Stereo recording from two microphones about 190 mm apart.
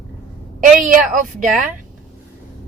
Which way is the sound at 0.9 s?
45° right (ahead or behind).